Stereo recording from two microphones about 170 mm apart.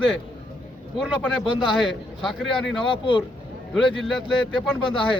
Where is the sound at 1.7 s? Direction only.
Centre (ahead or behind).